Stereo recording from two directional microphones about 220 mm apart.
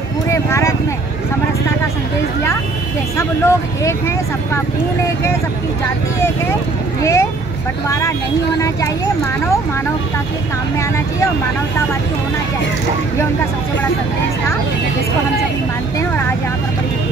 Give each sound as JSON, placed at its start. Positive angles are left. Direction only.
{"t": 0.3, "sound": "a sound", "side_deg": 10}
{"t": 3.2, "sound": "speech", "side_deg": 15}
{"t": 7.0, "sound": "speech", "side_deg": 10}
{"t": 8.5, "sound": "speech", "side_deg": 15}
{"t": 16.0, "sound": "speech", "side_deg": 10}